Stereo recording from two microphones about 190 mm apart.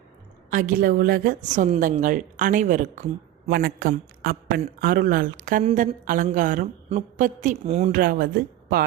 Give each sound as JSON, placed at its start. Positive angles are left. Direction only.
{"t": 0.5, "sound": "a woman's voice", "side_deg": -45}
{"t": 3.5, "sound": "a woman's voice", "side_deg": -55}